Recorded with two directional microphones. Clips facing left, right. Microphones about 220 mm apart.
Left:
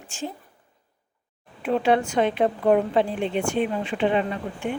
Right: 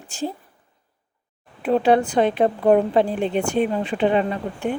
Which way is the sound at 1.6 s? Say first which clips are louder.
Right 4 dB; 35° right (ahead or behind).